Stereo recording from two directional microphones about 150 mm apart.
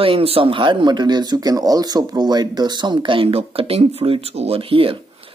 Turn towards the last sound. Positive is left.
turn(degrees=-35)  # may be behind; listen again after turning